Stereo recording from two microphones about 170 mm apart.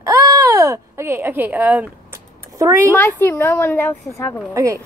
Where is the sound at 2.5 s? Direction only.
20° right (ahead or behind).